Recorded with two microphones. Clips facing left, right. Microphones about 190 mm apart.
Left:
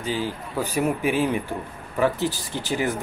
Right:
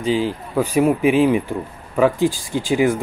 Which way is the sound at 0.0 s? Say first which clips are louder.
Right 7 dB; 15° right (ahead or behind).